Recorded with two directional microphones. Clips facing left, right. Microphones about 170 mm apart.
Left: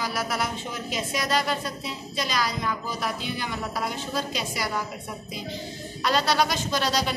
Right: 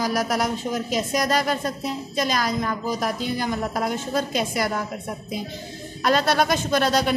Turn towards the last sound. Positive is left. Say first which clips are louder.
# right 5 dB
turn(degrees=-50)  # may be behind; listen again after turning